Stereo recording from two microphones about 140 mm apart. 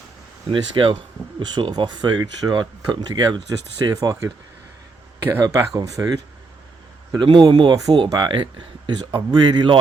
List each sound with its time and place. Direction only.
0.4 s speech: 40° right (ahead or behind)
5.4 s speech: 25° right (ahead or behind)